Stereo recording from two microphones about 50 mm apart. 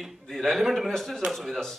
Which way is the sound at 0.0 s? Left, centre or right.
Centre.